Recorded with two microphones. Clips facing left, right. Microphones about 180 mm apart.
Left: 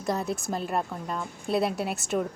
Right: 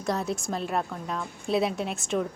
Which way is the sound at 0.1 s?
Centre (ahead or behind).